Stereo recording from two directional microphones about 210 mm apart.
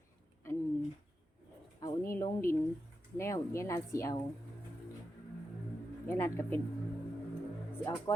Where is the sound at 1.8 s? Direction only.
15° left (ahead or behind).